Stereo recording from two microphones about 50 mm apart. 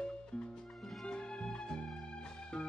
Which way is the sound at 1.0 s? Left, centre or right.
Centre.